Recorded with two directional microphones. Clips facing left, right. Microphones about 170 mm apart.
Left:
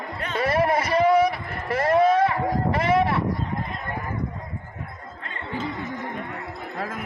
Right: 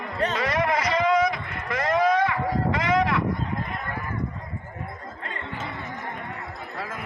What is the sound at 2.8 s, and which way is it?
Vehicle, 30° left (ahead or behind).